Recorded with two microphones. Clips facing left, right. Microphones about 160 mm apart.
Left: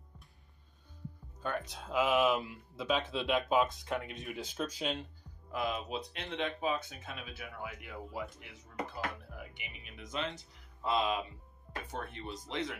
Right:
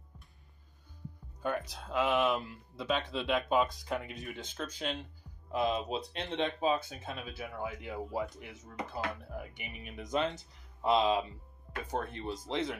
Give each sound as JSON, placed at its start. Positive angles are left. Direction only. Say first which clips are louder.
{"t": 1.4, "sound": "speech", "louder": "right 3 dB", "side_deg": -5}
{"t": 5.5, "sound": "speech", "louder": "right 4 dB", "side_deg": -25}
{"t": 10.8, "sound": "speech", "louder": "right 5 dB", "side_deg": -25}